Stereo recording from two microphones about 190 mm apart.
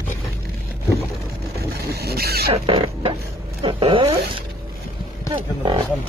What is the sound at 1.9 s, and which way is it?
Speech, 55° right (ahead or behind).